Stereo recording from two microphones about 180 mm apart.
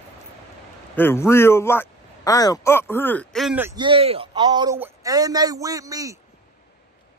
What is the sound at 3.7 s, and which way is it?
A man's voice, 30° right (ahead or behind).